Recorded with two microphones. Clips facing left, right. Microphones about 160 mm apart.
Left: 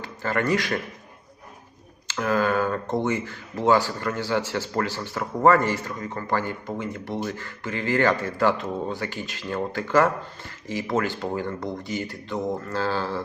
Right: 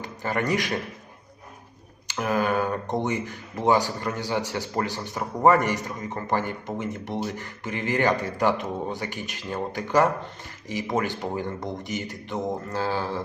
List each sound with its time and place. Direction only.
0.0 s a man's voice: 15° right (ahead or behind)
2.0 s speech: 20° right (ahead or behind)